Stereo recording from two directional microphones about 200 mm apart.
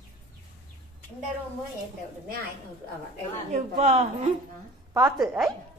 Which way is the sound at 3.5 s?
35° right (ahead or behind).